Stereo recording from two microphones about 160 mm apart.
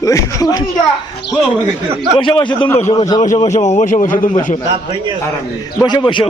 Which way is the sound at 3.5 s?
45° left (ahead or behind).